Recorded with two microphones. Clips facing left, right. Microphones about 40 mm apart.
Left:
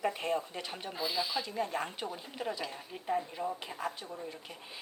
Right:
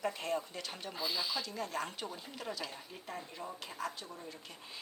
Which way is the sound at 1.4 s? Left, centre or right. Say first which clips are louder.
Left 4 dB; left.